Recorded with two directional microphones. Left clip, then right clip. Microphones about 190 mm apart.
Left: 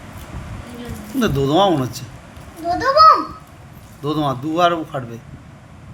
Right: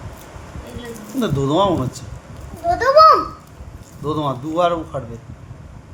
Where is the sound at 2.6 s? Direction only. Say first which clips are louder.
Right 1 dB; 35° right (ahead or behind).